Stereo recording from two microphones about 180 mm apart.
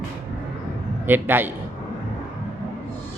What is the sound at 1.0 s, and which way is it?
Speech, 10° right (ahead or behind).